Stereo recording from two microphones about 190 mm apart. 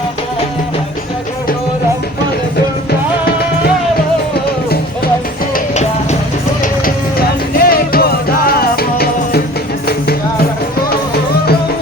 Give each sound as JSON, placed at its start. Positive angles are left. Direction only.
{"t": 5.7, "sound": "music", "side_deg": 35}
{"t": 6.8, "sound": "music", "side_deg": 55}